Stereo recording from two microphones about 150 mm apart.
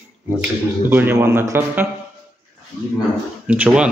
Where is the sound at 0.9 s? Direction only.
15° right (ahead or behind).